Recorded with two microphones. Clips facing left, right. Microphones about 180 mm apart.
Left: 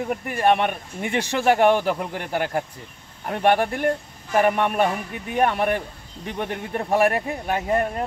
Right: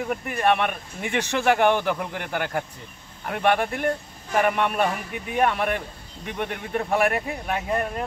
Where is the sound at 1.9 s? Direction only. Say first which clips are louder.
Left 2 dB; 35° left (ahead or behind).